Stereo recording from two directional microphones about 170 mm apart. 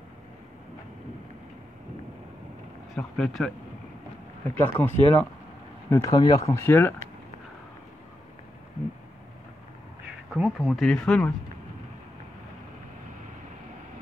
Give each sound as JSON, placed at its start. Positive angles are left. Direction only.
{"t": 3.0, "sound": "speech", "side_deg": 5}
{"t": 4.6, "sound": "speech", "side_deg": 10}
{"t": 10.3, "sound": "speech", "side_deg": -5}